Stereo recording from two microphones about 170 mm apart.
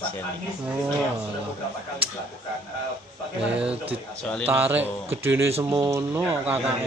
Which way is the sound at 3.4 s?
5° right (ahead or behind).